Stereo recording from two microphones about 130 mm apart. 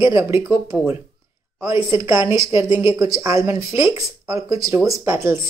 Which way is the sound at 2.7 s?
40° left (ahead or behind).